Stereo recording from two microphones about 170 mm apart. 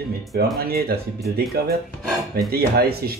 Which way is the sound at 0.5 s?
65° right (ahead or behind).